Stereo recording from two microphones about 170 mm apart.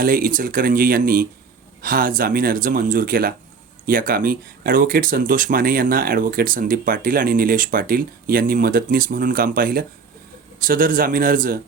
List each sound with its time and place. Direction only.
0.0 s speech: 55° right (ahead or behind)